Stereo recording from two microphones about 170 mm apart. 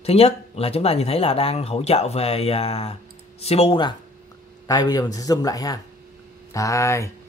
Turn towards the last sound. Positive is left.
turn(degrees=15)  # may be behind; listen again after turning